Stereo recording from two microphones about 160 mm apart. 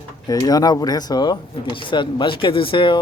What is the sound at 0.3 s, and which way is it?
Speech, 25° left (ahead or behind).